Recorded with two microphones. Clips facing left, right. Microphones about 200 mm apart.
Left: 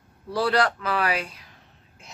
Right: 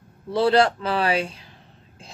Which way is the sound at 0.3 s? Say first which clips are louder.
Right 5 dB; 25° right (ahead or behind).